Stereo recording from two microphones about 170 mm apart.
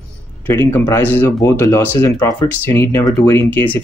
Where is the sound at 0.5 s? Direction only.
15° left (ahead or behind).